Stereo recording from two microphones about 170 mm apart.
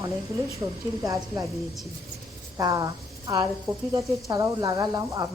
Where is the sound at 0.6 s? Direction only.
20° right (ahead or behind).